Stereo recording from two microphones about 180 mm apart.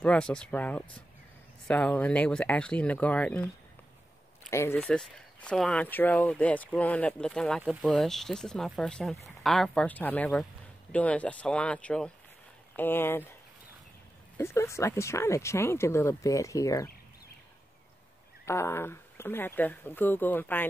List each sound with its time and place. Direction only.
0.0 s speech: 5° left (ahead or behind)
4.5 s speech: 15° left (ahead or behind)
14.3 s speech: 15° left (ahead or behind)
18.4 s speech: 15° left (ahead or behind)